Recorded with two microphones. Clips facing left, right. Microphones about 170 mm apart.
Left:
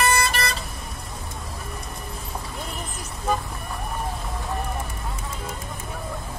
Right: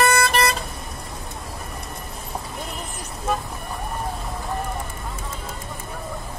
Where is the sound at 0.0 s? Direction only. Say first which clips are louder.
Right 4 dB; 55° right (ahead or behind).